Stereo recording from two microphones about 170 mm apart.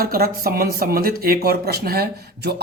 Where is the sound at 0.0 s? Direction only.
60° right (ahead or behind).